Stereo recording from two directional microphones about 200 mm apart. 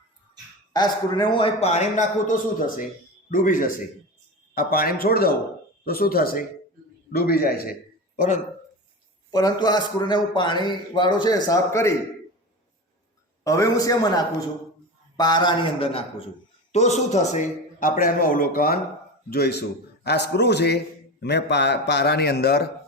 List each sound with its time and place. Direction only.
0.7 s a man's voice: 20° left (ahead or behind); by 7.8 s 50° left (ahead or behind)
9.3 s a man's voice: 20° left (ahead or behind)
13.4 s a man's voice: 15° left (ahead or behind); by 22.6 s 55° left (ahead or behind)